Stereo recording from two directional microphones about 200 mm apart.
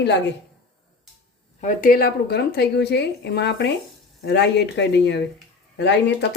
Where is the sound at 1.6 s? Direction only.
45° left (ahead or behind).